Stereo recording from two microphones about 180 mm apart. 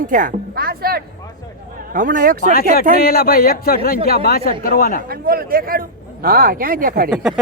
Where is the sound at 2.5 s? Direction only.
55° left (ahead or behind).